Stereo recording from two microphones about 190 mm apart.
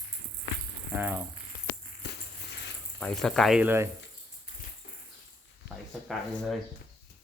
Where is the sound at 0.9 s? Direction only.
10° right (ahead or behind).